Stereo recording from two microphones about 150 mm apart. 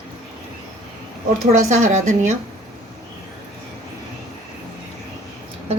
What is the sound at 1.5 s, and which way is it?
Speech, 55° right (ahead or behind).